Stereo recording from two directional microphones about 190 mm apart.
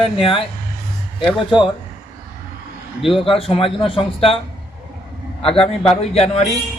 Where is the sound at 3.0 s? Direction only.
Centre (ahead or behind).